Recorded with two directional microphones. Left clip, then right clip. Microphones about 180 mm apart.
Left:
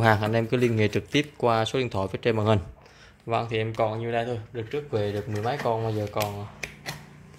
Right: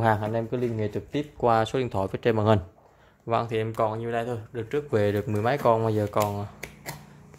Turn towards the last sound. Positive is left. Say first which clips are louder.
# left 3 dB
turn(degrees=-40)  # may be behind; listen again after turning